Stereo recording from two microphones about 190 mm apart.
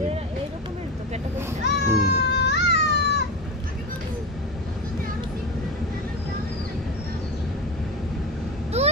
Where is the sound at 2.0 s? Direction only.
60° left (ahead or behind).